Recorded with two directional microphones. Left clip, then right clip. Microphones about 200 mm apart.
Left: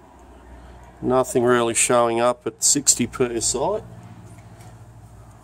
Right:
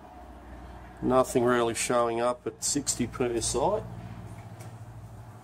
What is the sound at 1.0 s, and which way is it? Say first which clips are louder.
Speech: left 5 dB; 25° left (ahead or behind).